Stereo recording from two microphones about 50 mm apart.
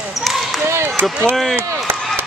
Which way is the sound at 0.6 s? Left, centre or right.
Right.